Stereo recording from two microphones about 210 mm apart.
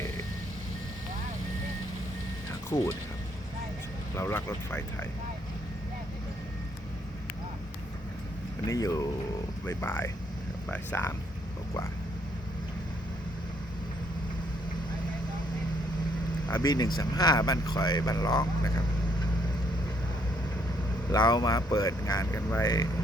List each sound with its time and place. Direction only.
2.6 s speech: 15° left (ahead or behind)
4.1 s speech: 10° left (ahead or behind)
8.6 s speech: 15° left (ahead or behind)
16.5 s speech: 20° left (ahead or behind)
21.1 s speech: 20° left (ahead or behind)